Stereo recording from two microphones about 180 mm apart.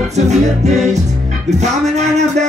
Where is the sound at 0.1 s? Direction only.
40° right (ahead or behind).